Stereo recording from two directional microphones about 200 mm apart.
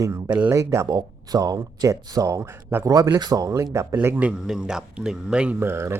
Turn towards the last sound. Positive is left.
turn(degrees=-10)  # may be behind; listen again after turning